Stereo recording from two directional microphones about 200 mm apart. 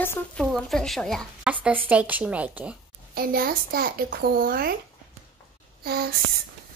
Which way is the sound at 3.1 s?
50° right (ahead or behind).